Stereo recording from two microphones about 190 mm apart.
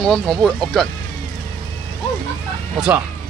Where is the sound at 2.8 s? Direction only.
5° right (ahead or behind).